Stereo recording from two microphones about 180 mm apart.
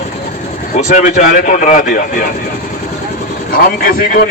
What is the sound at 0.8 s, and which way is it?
A man's voice, 40° left (ahead or behind).